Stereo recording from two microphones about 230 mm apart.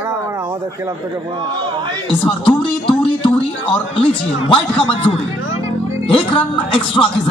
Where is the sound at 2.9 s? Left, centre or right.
Left.